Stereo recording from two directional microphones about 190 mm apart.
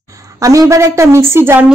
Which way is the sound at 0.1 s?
15° right (ahead or behind).